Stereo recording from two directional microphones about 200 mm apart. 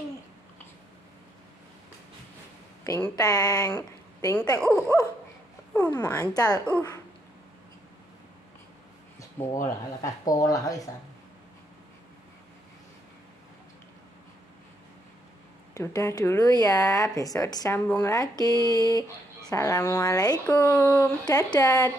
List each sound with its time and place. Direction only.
2.8 s speech: 15° left (ahead or behind)
9.5 s speech: 15° left (ahead or behind)
15.7 s speech: 15° left (ahead or behind)